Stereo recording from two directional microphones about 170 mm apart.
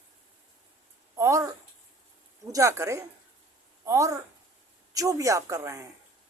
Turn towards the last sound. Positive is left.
turn(degrees=-15)  # may be behind; listen again after turning